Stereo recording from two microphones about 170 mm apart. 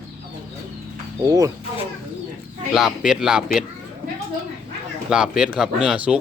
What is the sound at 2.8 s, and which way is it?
Speech, 5° right (ahead or behind).